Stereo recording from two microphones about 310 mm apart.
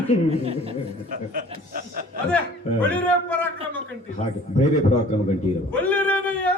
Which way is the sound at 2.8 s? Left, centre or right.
Centre.